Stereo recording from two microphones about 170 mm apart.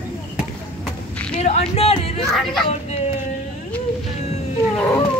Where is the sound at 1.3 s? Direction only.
40° left (ahead or behind).